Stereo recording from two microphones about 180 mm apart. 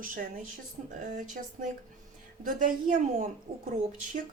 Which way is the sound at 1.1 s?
45° right (ahead or behind).